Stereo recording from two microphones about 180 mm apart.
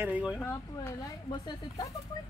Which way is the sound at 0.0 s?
5° right (ahead or behind).